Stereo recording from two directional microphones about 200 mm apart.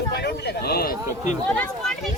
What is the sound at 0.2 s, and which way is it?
Speech, 55° left (ahead or behind).